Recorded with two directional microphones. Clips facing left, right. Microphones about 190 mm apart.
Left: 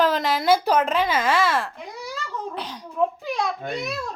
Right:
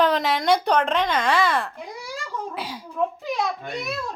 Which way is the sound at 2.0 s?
10° right (ahead or behind).